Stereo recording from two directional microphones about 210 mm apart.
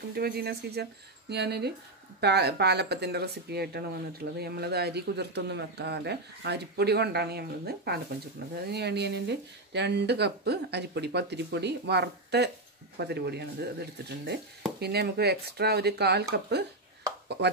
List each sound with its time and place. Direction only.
0.1 s speech: 50° right (ahead or behind)